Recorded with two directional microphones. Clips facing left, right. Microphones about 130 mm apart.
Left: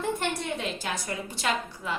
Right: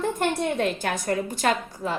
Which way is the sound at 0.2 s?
50° right (ahead or behind).